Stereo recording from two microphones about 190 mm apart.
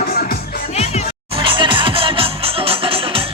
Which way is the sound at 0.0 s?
50° left (ahead or behind).